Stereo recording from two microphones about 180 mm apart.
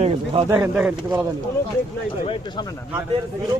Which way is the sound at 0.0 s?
35° right (ahead or behind).